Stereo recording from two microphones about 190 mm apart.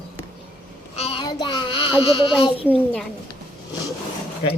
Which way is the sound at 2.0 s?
30° left (ahead or behind).